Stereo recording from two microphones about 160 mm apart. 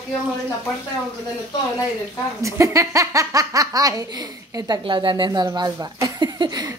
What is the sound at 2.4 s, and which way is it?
Speech, 20° right (ahead or behind).